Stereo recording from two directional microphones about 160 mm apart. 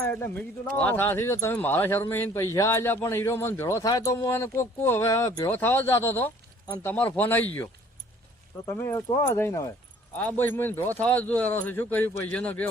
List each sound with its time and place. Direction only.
0.0 s speech: 15° left (ahead or behind)